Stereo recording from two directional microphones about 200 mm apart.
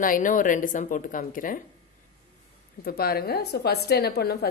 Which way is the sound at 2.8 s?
50° left (ahead or behind).